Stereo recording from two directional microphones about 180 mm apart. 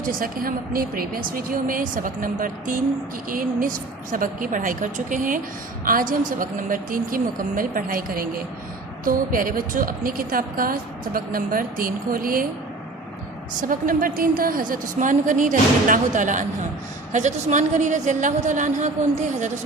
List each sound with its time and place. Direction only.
0.0 s a woman's voice: 50° right (ahead or behind)
13.6 s a woman's voice: 50° right (ahead or behind)